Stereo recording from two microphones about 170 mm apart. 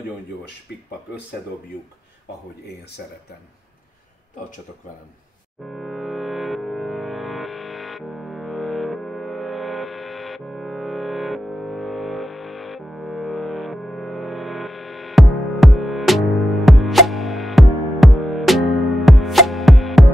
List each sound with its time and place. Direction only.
5.7 s music: centre (ahead or behind)